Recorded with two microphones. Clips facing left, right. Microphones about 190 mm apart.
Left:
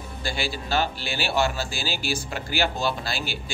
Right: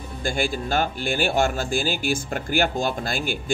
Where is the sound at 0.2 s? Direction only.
50° right (ahead or behind).